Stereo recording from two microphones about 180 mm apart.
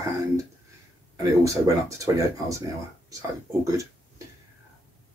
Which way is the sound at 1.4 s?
20° right (ahead or behind).